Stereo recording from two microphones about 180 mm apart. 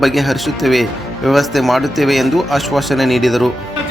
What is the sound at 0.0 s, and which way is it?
Speech, centre (ahead or behind).